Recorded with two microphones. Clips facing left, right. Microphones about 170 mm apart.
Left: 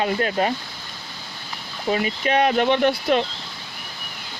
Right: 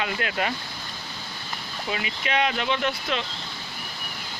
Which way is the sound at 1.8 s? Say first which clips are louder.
Left 9 dB; 40° left (ahead or behind).